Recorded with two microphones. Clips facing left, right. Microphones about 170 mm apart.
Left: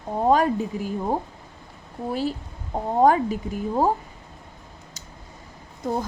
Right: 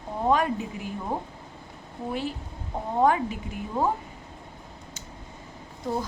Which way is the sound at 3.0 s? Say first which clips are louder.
Left 4 dB; 40° left (ahead or behind).